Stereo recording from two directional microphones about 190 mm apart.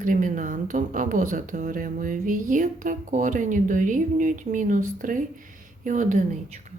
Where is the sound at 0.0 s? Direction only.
45° right (ahead or behind).